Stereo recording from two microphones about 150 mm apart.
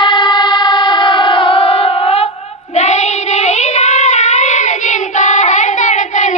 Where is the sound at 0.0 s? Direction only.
30° left (ahead or behind).